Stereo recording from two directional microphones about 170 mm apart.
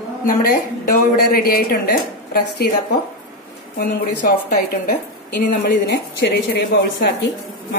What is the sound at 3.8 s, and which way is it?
Speech, 70° left (ahead or behind).